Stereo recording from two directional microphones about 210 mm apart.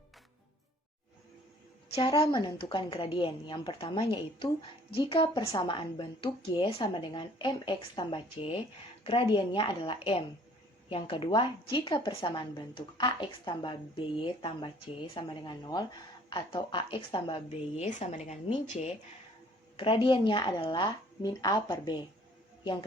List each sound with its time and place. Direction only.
1.9 s a woman's voice: 25° left (ahead or behind)